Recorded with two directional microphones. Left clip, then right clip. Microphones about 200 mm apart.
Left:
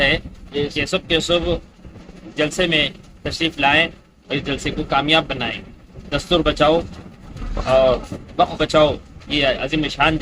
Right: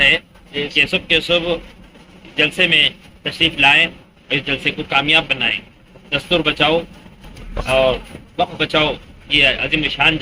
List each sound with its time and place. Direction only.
0.8 s a man's voice: 15° left (ahead or behind)